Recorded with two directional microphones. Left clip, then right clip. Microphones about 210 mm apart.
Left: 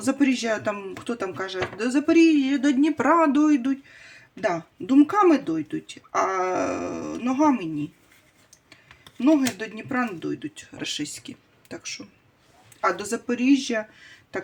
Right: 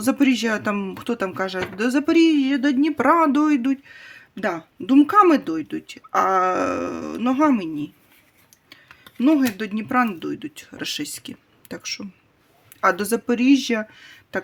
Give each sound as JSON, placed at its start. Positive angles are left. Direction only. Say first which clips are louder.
{"t": 0.0, "sound": "speech", "louder": "right 3 dB", "side_deg": -45}
{"t": 4.9, "sound": "speech", "louder": "right 4 dB", "side_deg": -50}